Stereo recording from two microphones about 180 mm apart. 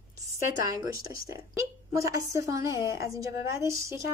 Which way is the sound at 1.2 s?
15° right (ahead or behind).